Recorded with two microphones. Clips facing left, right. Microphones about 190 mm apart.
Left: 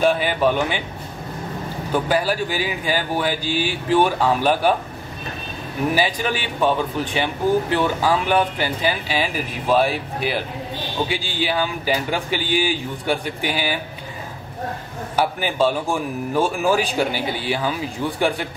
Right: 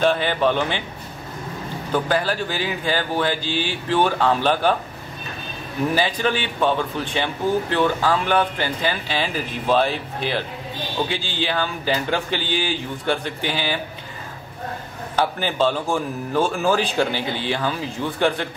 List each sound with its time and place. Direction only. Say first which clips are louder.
0.0 s a man's voice: left 1 dB; 10° left (ahead or behind)
1.9 s a man's voice: left 1 dB; 10° left (ahead or behind)
5.9 s a man's voice: even; 10° left (ahead or behind)
15.1 s a man's voice: left 1 dB; 10° left (ahead or behind)